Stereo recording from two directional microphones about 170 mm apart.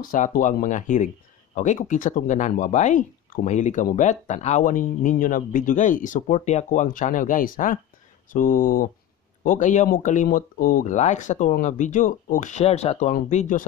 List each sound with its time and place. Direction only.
0.0 s speech: 55° left (ahead or behind)